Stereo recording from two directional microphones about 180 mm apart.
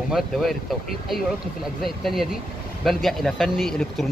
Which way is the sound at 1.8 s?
Centre (ahead or behind).